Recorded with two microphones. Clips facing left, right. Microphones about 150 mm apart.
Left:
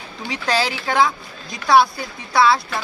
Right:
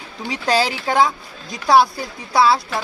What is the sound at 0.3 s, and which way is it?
Speech, 40° right (ahead or behind).